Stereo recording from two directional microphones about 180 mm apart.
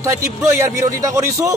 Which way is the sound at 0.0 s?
15° right (ahead or behind).